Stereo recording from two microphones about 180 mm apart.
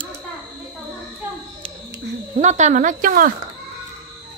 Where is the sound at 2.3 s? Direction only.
40° right (ahead or behind).